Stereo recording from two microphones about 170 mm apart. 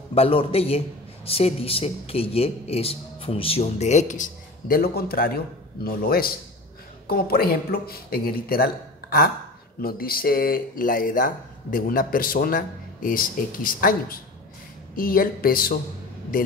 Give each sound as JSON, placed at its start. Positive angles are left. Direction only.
{"t": 0.1, "sound": "a man's voice", "side_deg": 35}